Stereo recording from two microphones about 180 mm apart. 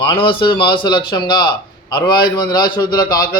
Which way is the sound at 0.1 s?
30° left (ahead or behind).